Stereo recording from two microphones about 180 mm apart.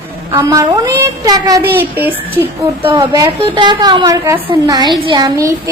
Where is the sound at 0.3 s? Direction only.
20° right (ahead or behind).